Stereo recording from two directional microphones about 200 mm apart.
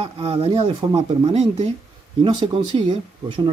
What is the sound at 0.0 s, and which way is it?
Speech, 30° right (ahead or behind).